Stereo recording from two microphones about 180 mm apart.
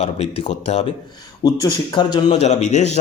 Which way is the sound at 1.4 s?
25° left (ahead or behind).